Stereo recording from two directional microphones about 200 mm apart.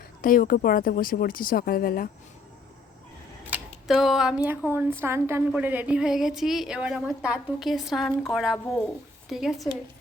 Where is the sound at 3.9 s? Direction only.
Centre (ahead or behind).